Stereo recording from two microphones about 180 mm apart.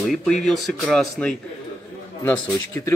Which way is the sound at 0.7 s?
5° left (ahead or behind).